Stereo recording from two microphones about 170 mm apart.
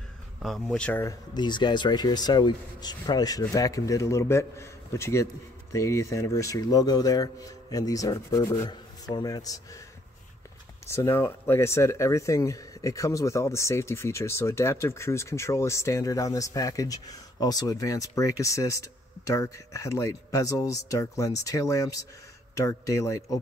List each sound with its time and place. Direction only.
0.4 s speech: centre (ahead or behind)
1.3 s speech: 25° left (ahead or behind)
10.9 s speech: 15° left (ahead or behind)